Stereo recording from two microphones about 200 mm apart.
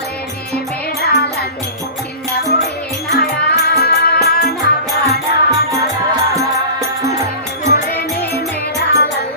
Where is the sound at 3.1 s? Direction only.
55° left (ahead or behind).